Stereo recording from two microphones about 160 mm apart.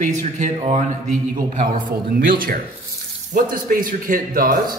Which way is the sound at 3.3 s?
60° right (ahead or behind).